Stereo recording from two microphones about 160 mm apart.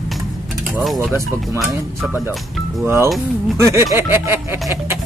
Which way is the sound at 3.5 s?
15° right (ahead or behind).